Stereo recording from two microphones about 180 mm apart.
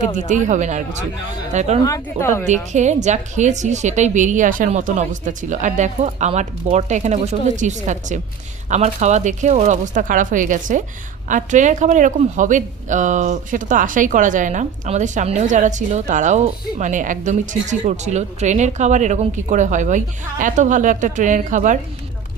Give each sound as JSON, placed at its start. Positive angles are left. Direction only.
{"t": 0.2, "sound": "a woman's voice", "side_deg": -45}
{"t": 1.8, "sound": "speech", "side_deg": 15}
{"t": 2.7, "sound": "a woman's voice", "side_deg": -40}